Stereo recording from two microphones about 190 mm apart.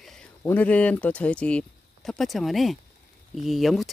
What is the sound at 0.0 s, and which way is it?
Speech, 5° left (ahead or behind).